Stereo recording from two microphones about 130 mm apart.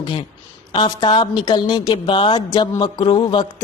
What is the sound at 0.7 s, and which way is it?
A woman's voice, 35° left (ahead or behind).